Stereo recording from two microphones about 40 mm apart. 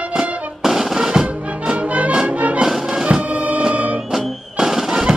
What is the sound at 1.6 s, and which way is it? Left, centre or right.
Music, right.